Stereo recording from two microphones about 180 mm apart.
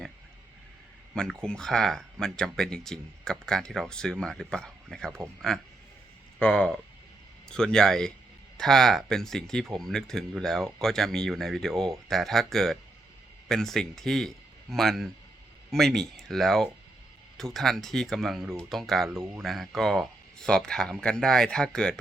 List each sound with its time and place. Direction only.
1.1 s speech: 5° left (ahead or behind)